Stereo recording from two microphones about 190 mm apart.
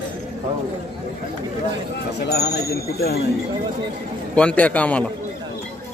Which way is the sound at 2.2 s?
60° left (ahead or behind).